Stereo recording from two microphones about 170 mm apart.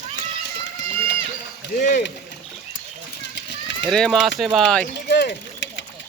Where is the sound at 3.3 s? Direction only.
90° left.